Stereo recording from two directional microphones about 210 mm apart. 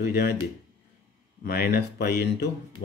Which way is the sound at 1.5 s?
50° left (ahead or behind).